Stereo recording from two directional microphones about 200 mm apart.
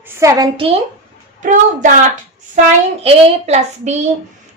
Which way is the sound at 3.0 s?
30° right (ahead or behind).